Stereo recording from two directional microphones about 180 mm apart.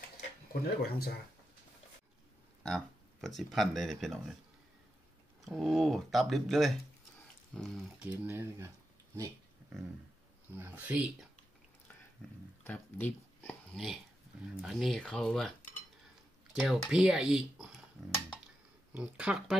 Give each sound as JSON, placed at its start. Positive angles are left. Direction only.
{"t": 0.5, "sound": "speech", "side_deg": 60}
{"t": 2.6, "sound": "speech", "side_deg": 0}
{"t": 5.4, "sound": "speech", "side_deg": 0}
{"t": 8.1, "sound": "speech", "side_deg": -10}
{"t": 10.5, "sound": "speech", "side_deg": -10}
{"t": 12.6, "sound": "a sound", "side_deg": 10}
{"t": 14.6, "sound": "speech", "side_deg": 0}
{"t": 16.5, "sound": "speech", "side_deg": 0}
{"t": 18.9, "sound": "speech", "side_deg": -5}